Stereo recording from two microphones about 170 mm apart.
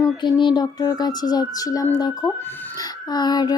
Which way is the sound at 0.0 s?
25° left (ahead or behind).